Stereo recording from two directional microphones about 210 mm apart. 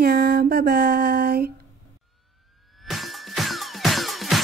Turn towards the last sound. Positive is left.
turn(degrees=0)  # may be behind; listen again after turning